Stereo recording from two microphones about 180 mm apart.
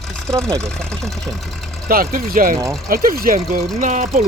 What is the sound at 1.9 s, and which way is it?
Speech, 55° right (ahead or behind).